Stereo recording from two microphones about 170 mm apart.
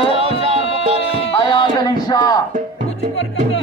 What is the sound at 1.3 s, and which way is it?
Music, 30° left (ahead or behind).